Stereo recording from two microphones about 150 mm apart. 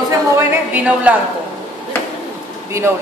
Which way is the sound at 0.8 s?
10° right (ahead or behind).